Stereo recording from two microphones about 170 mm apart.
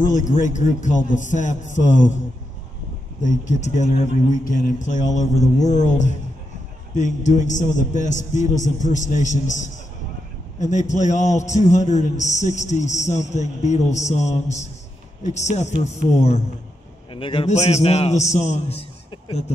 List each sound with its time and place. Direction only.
0.0 s a man's voice: 50° left (ahead or behind)
3.2 s a man's voice: 45° left (ahead or behind)
17.1 s a man's voice: 30° left (ahead or behind)